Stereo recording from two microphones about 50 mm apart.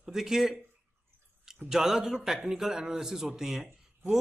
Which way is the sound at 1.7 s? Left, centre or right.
Centre.